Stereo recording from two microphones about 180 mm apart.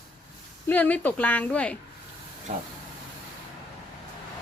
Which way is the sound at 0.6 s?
10° left (ahead or behind).